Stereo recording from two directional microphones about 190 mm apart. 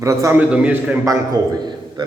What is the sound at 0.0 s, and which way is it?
Speech, 15° right (ahead or behind).